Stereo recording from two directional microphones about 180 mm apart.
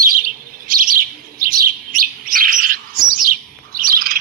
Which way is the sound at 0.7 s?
50° right (ahead or behind).